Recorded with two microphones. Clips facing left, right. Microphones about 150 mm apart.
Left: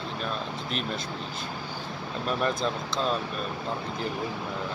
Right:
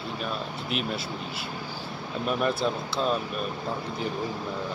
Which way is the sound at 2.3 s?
5° right (ahead or behind).